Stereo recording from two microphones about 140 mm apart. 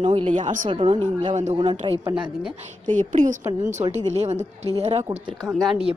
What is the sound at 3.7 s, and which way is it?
A woman's voice, 55° right (ahead or behind).